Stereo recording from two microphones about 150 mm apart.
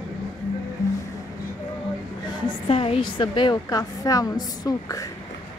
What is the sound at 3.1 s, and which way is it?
A woman's voice, 30° left (ahead or behind).